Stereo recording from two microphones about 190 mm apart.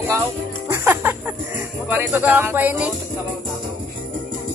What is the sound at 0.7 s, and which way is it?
Music, 10° right (ahead or behind).